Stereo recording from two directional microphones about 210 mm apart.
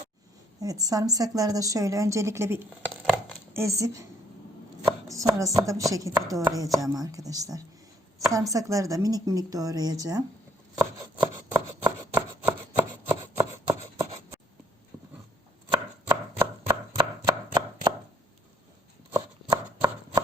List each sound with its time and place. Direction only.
0.6 s a woman's voice: 15° right (ahead or behind)
5.0 s a woman's voice: 15° right (ahead or behind)
10.8 s rub: 20° right (ahead or behind)
11.9 s chopping: 15° right (ahead or behind)
14.9 s a sound: 10° right (ahead or behind)
15.7 s chopping: 20° right (ahead or behind)
19.1 s chopping: 15° right (ahead or behind)